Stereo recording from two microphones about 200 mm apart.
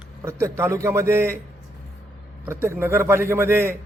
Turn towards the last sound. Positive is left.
turn(degrees=-10)  # may be behind; listen again after turning